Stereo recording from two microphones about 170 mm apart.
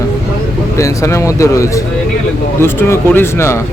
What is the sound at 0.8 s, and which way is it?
Speech, 15° left (ahead or behind).